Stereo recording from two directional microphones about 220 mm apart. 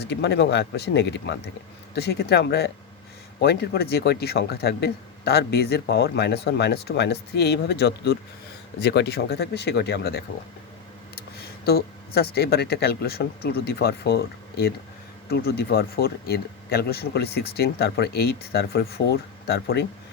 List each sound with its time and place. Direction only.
0.0 s speech: 50° left (ahead or behind)
11.3 s speech: 45° left (ahead or behind)